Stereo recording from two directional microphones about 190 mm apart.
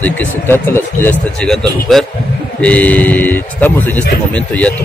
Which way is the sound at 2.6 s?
5° left (ahead or behind).